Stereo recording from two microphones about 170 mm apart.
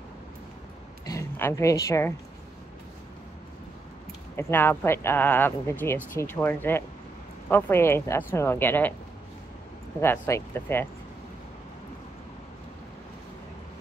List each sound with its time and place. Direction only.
1.0 s speech: 15° left (ahead or behind)
4.4 s speech: 15° left (ahead or behind)
9.9 s speech: 15° left (ahead or behind)